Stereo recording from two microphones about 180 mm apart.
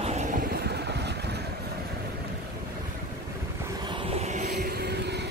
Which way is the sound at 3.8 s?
25° right (ahead or behind).